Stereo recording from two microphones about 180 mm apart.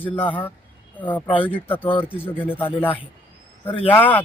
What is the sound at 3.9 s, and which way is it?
Speech, 10° left (ahead or behind).